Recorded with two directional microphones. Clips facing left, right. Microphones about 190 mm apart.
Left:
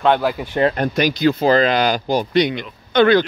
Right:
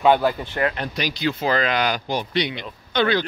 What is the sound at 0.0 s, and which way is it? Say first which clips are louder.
Speech: left 1 dB; centre (ahead or behind).